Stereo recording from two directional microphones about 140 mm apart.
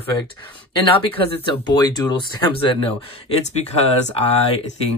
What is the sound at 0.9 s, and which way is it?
Speech, 40° left (ahead or behind).